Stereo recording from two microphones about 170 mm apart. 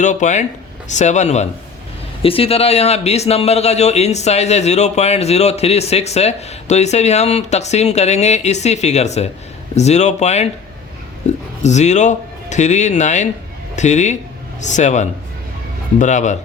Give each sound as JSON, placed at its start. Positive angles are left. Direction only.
{"t": 0.0, "sound": "speech", "side_deg": 45}